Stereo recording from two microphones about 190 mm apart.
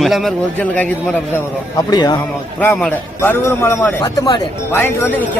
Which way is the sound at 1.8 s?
20° left (ahead or behind).